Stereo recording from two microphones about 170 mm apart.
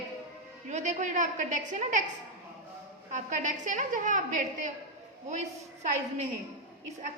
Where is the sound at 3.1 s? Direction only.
45° right (ahead or behind).